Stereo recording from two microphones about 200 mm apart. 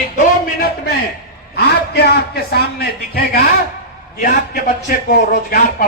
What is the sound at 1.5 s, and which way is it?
A man's voice, 50° left (ahead or behind).